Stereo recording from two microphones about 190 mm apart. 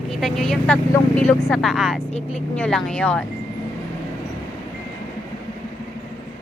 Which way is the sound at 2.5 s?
5° left (ahead or behind).